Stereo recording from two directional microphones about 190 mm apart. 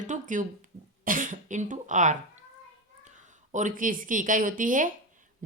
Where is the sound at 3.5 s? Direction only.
45° right (ahead or behind).